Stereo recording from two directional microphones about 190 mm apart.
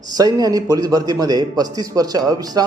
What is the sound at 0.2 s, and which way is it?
A man's voice, 20° right (ahead or behind).